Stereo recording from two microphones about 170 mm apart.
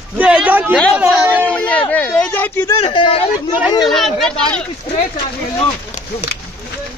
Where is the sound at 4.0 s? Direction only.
Centre (ahead or behind).